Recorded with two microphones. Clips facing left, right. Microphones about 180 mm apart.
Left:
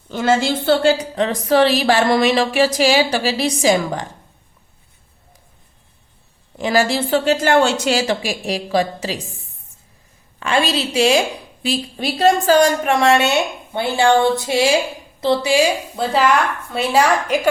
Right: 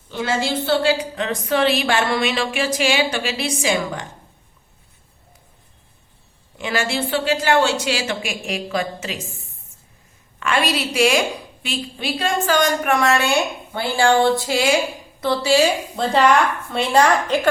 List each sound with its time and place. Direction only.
0.1 s a woman's voice: 50° left (ahead or behind)
6.6 s a woman's voice: 40° left (ahead or behind)
10.4 s a woman's voice: 30° left (ahead or behind); by 17.5 s 10° left (ahead or behind)